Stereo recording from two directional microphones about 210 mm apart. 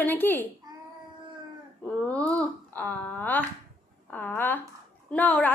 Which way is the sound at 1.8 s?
5° left (ahead or behind).